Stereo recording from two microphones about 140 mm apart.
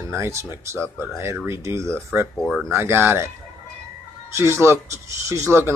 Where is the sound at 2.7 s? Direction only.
20° right (ahead or behind).